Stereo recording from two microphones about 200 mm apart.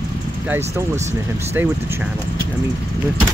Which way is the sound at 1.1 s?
10° right (ahead or behind).